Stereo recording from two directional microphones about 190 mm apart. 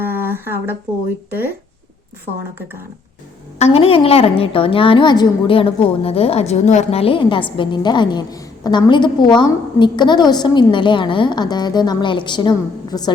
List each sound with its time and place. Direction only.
0.0 s a sound: 10° right (ahead or behind)
1.3 s speech: 10° right (ahead or behind)
3.6 s a woman's voice: 30° left (ahead or behind)